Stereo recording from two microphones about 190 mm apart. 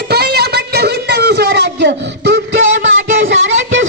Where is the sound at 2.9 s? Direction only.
80° right.